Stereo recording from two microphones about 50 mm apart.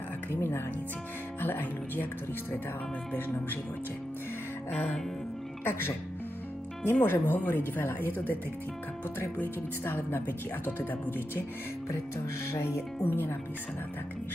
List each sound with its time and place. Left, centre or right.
0.3 s speech: left
5.6 s speech: left
9.4 s speech: left
12.4 s speech: left
13.0 s speech: left